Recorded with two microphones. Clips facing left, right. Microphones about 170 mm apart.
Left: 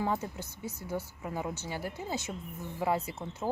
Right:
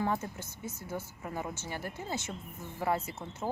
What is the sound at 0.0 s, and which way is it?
Speech, 15° left (ahead or behind).